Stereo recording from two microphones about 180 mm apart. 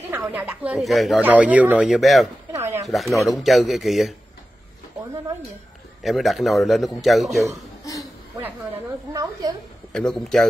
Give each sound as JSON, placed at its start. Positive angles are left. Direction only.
{"t": 0.2, "sound": "speech", "side_deg": -5}
{"t": 2.5, "sound": "a sound", "side_deg": -15}
{"t": 3.3, "sound": "speech", "side_deg": 0}
{"t": 6.0, "sound": "speech", "side_deg": 0}
{"t": 9.1, "sound": "a sound", "side_deg": -20}
{"t": 9.9, "sound": "speech", "side_deg": 5}